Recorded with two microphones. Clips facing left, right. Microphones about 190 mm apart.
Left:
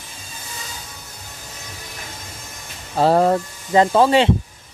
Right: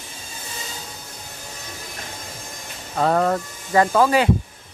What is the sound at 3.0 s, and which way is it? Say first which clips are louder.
Speech: left 4 dB; 30° left (ahead or behind).